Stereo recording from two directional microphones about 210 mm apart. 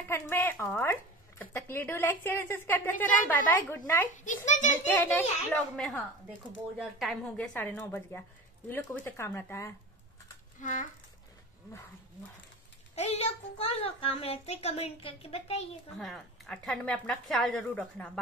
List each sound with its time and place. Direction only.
0.1 s a woman's voice: 10° left (ahead or behind)
4.2 s a child's voice: 35° left (ahead or behind)
4.8 s a woman's voice: 10° left (ahead or behind)
6.8 s a woman's voice: centre (ahead or behind)
10.6 s a child's voice: 35° left (ahead or behind)
12.9 s a child's voice: 30° left (ahead or behind)
16.0 s a woman's voice: centre (ahead or behind)